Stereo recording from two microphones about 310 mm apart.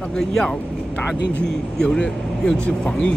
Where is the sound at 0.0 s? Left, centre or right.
Centre.